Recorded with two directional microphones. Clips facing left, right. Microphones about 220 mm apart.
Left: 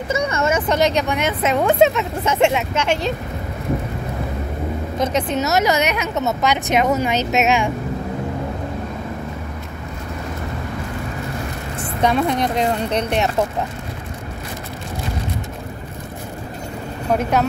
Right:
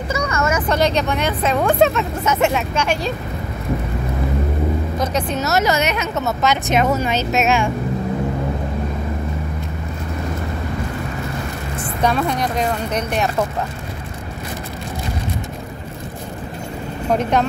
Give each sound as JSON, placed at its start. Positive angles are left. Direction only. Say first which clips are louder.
{"t": 0.1, "sound": "speech", "louder": "left 1 dB", "side_deg": 25}
{"t": 4.9, "sound": "a woman's voice", "louder": "left 1 dB", "side_deg": 20}
{"t": 12.0, "sound": "speech", "louder": "left 1 dB", "side_deg": 20}
{"t": 17.1, "sound": "a woman's voice", "louder": "even", "side_deg": 5}